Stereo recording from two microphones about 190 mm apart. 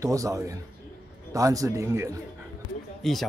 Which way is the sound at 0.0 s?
15° right (ahead or behind).